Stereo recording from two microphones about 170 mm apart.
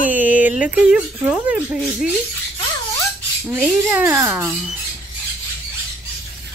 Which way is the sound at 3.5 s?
10° right (ahead or behind).